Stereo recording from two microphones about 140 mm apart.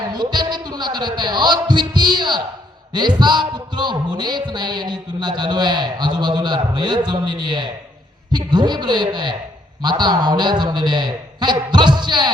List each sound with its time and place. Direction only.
0.1 s speech: 30° right (ahead or behind)